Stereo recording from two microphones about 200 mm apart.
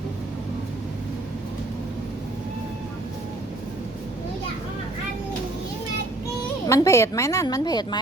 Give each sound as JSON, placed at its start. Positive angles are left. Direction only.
{"t": 6.7, "sound": "a woman's voice", "side_deg": 15}